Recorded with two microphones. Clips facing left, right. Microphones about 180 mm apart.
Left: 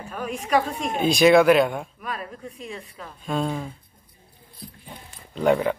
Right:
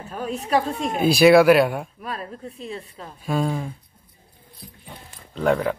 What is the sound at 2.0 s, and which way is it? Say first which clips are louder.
Speech: right 1 dB; 30° right (ahead or behind).